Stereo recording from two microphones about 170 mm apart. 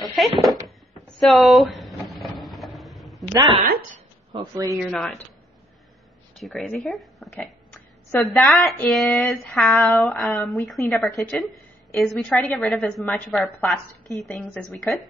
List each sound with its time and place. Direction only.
0.0 s speech: centre (ahead or behind)
0.7 s cupboard open or close: centre (ahead or behind)
3.3 s a man's voice: 30° right (ahead or behind)
4.6 s a woman's voice: centre (ahead or behind)
6.4 s a woman's voice: centre (ahead or behind)